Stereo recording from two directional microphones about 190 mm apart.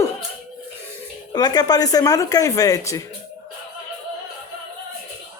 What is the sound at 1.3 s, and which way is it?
Speech, 20° left (ahead or behind).